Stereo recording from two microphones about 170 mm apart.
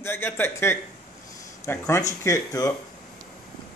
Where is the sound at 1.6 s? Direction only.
15° left (ahead or behind).